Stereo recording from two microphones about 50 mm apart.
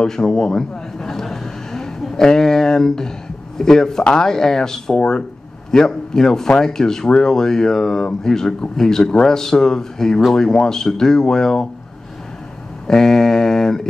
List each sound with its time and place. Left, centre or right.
0.0 s a sound: centre
3.5 s speech: centre
12.8 s speech: centre